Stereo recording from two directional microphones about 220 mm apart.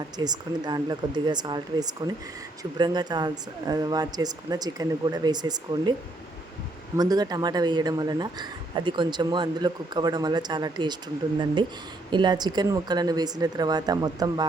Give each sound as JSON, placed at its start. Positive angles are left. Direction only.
{"t": 0.2, "sound": "speech", "side_deg": -20}
{"t": 6.9, "sound": "speech", "side_deg": -15}
{"t": 12.1, "sound": "speech", "side_deg": -20}